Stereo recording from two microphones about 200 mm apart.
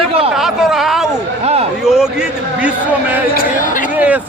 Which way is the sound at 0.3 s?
Centre (ahead or behind).